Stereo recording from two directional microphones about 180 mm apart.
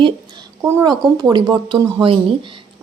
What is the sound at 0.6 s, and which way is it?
A woman's voice, 15° right (ahead or behind).